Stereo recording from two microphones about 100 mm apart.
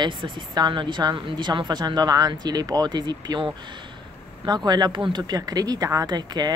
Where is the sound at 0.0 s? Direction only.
50° right (ahead or behind).